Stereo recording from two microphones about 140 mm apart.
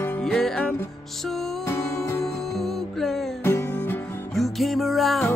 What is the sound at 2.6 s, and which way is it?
Music, centre (ahead or behind).